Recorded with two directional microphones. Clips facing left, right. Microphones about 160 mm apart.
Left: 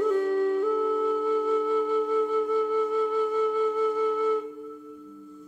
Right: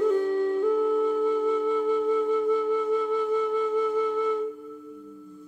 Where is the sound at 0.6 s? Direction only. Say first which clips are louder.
Right 2 dB; centre (ahead or behind).